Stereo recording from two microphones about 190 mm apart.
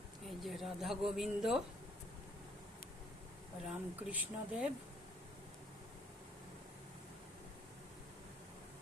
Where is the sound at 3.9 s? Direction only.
10° right (ahead or behind).